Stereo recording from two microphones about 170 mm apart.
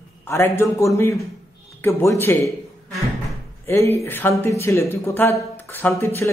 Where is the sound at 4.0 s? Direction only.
15° left (ahead or behind).